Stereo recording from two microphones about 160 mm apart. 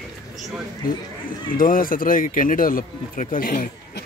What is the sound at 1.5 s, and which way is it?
Speech, 60° left (ahead or behind).